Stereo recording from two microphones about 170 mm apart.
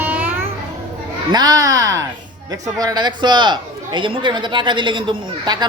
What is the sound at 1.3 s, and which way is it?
A man's voice, 25° right (ahead or behind).